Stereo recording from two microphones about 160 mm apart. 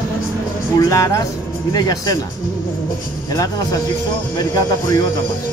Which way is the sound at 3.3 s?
20° left (ahead or behind).